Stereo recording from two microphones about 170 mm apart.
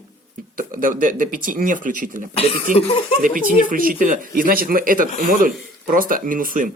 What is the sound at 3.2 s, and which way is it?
Speech, 55° right (ahead or behind).